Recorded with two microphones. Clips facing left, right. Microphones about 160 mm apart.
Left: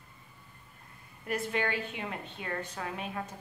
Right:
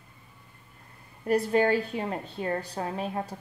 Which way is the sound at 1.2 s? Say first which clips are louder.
Right 9 dB; 35° right (ahead or behind).